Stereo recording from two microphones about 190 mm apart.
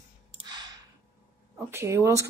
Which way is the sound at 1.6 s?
15° right (ahead or behind).